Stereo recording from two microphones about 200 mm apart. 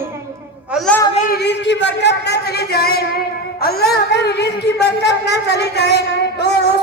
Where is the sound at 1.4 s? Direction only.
60° left (ahead or behind).